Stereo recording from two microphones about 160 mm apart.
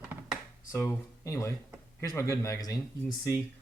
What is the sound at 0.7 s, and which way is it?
Speech, 20° left (ahead or behind).